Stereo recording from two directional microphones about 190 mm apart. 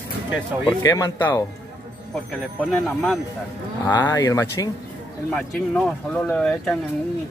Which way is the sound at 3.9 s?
20° left (ahead or behind).